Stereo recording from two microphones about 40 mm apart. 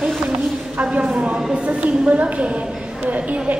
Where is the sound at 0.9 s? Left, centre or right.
Right.